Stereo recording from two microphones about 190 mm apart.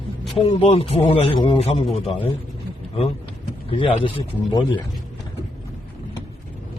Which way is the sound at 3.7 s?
30° left (ahead or behind).